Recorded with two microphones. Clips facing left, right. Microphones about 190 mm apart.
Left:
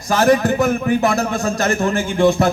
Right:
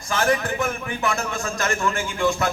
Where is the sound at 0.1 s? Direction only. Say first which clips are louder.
Left 8 dB; 40° left (ahead or behind).